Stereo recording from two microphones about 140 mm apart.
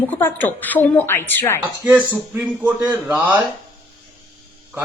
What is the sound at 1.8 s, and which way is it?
Speech, 10° right (ahead or behind).